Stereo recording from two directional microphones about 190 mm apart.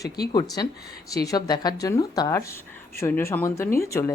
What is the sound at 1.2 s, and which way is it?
A woman's voice, 20° left (ahead or behind).